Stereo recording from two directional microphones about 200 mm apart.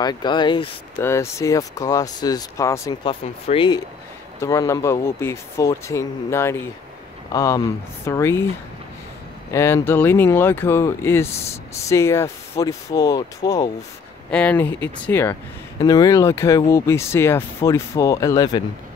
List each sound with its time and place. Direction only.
0.0 s speech: 20° left (ahead or behind)
4.4 s speech: 15° left (ahead or behind)
9.5 s speech: 15° left (ahead or behind)